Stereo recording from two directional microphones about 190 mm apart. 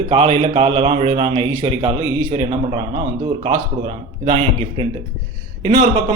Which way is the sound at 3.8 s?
35° right (ahead or behind).